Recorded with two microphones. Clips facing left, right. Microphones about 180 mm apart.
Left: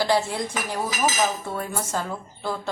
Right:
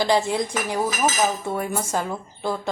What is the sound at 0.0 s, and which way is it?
Speech, 15° right (ahead or behind).